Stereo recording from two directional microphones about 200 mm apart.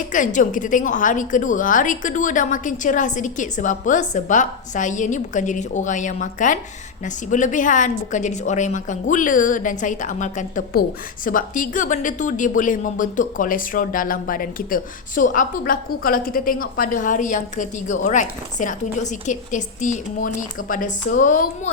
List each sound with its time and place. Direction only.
0.1 s speech: 40° left (ahead or behind)